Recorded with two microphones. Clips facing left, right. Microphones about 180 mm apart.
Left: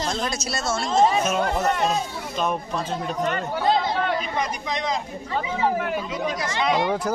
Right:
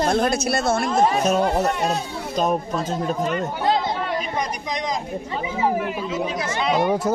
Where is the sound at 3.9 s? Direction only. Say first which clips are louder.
Even; 15° right (ahead or behind).